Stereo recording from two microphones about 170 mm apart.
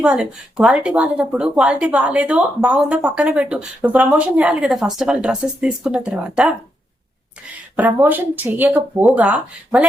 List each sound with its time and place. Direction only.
0.0 s speech: 5° right (ahead or behind)
7.8 s speech: 10° right (ahead or behind)